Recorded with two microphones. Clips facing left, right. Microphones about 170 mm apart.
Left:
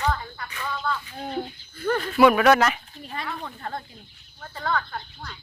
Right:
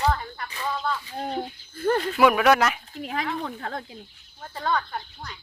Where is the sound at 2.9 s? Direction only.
90° right.